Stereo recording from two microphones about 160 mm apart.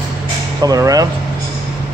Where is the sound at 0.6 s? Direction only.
25° right (ahead or behind).